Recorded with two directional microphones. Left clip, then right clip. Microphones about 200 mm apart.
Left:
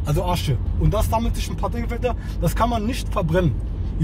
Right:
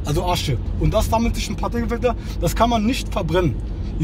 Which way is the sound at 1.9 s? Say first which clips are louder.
Right 4 dB; 15° right (ahead or behind).